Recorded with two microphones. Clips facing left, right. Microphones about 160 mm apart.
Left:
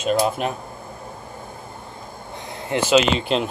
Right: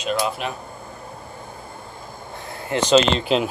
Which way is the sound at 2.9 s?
5° left (ahead or behind).